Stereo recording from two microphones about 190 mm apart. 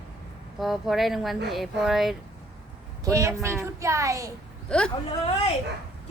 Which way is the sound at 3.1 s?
15° right (ahead or behind).